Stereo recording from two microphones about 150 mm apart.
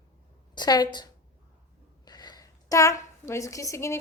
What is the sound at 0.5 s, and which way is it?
Speech, 25° left (ahead or behind).